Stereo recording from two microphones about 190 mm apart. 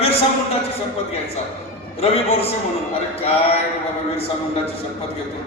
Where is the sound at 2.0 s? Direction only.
30° left (ahead or behind).